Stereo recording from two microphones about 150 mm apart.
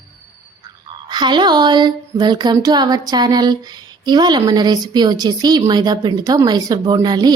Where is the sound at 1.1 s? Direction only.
30° right (ahead or behind).